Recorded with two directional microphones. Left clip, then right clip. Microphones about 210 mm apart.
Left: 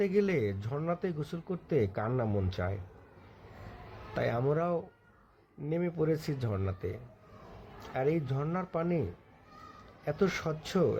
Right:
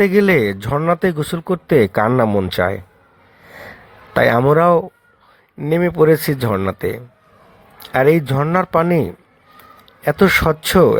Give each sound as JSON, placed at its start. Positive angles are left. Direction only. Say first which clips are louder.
{"t": 0.0, "sound": "speech", "louder": "right 16 dB", "side_deg": -45}
{"t": 4.1, "sound": "speech", "louder": "right 19 dB", "side_deg": -45}
{"t": 7.9, "sound": "speech", "louder": "right 18 dB", "side_deg": -45}